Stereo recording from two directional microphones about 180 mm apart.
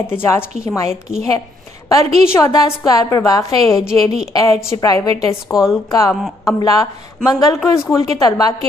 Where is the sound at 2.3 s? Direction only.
15° left (ahead or behind).